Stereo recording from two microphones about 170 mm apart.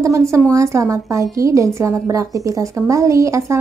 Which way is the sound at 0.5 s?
20° right (ahead or behind).